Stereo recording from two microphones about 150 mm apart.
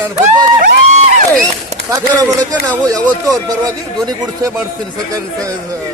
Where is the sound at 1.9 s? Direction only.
25° right (ahead or behind).